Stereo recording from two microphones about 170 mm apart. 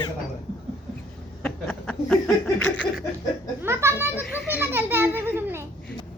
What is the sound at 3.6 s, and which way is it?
A child's voice, 15° right (ahead or behind).